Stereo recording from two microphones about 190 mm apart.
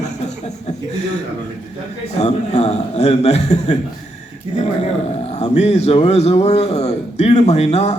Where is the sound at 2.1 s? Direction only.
35° left (ahead or behind).